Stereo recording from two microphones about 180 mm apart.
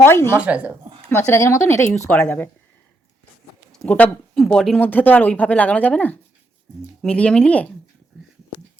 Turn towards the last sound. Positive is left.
turn(degrees=5)  # may be behind; listen again after turning